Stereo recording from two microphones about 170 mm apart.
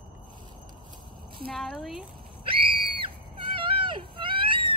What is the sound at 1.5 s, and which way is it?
Speech, centre (ahead or behind).